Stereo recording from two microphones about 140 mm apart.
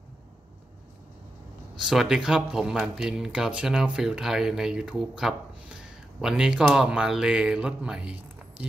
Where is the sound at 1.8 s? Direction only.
5° right (ahead or behind).